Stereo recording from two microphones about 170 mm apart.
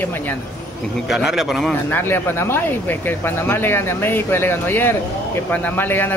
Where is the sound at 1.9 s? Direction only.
15° left (ahead or behind).